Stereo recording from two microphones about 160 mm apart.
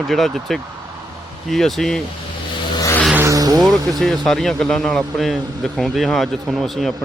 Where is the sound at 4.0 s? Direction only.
Centre (ahead or behind).